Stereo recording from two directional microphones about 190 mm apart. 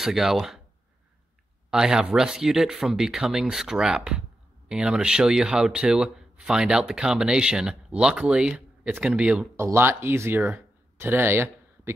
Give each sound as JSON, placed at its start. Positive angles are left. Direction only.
{"t": 0.0, "sound": "speech", "side_deg": 0}
{"t": 1.7, "sound": "speech", "side_deg": -5}